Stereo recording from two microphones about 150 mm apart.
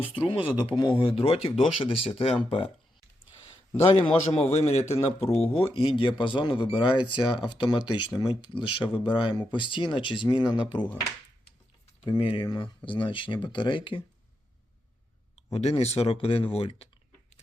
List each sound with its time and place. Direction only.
0.3 s speech: 35° left (ahead or behind)
4.4 s speech: 45° left (ahead or behind)
12.0 s speech: 30° left (ahead or behind)
15.5 s speech: 45° left (ahead or behind)